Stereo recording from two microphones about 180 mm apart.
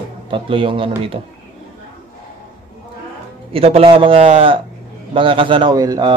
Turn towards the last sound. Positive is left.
turn(degrees=-20)  # may be behind; listen again after turning